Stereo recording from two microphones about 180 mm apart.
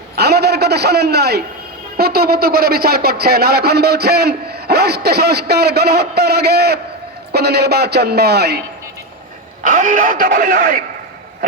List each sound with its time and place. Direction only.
0.2 s a sound: 65° right (ahead or behind)
2.0 s speech: 60° right (ahead or behind)
9.6 s speech: 45° right (ahead or behind)